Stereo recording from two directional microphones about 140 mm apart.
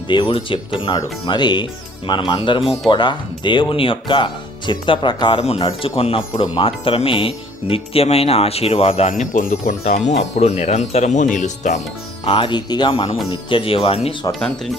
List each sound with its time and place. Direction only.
0.1 s speech: 35° left (ahead or behind)
9.0 s speech: 65° left (ahead or behind)
9.8 s speech: 50° left (ahead or behind)
12.2 s speech: 40° left (ahead or behind)